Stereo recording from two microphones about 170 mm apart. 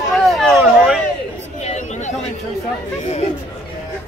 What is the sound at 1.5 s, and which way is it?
Chatter, 40° left (ahead or behind).